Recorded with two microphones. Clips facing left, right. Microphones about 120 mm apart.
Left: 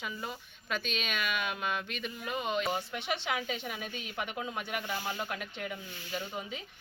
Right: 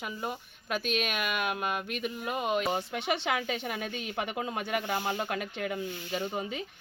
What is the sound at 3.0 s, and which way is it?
Speech, 65° right (ahead or behind).